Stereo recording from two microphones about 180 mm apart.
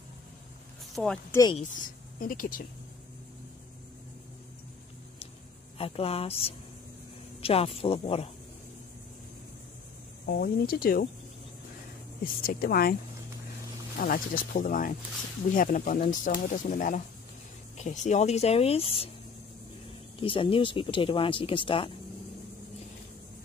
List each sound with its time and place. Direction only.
0.9 s speech: 5° left (ahead or behind)
2.1 s speech: 50° left (ahead or behind)
5.8 s speech: 30° left (ahead or behind)
10.2 s speech: 55° left (ahead or behind)
12.2 s speech: 55° left (ahead or behind)
13.9 s speech: 50° left (ahead or behind); by 19.0 s 30° left (ahead or behind)
20.2 s speech: 30° left (ahead or behind)